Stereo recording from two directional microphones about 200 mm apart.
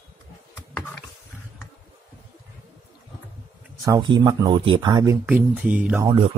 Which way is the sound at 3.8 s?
20° right (ahead or behind).